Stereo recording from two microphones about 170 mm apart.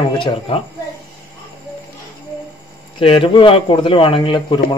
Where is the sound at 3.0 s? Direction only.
30° left (ahead or behind).